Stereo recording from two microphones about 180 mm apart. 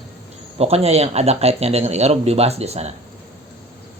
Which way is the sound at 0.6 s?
35° right (ahead or behind).